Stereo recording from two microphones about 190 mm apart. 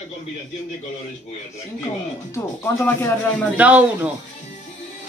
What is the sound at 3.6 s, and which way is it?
Speech, 5° right (ahead or behind).